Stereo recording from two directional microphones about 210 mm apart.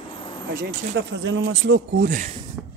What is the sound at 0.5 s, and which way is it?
Speech, 55° right (ahead or behind).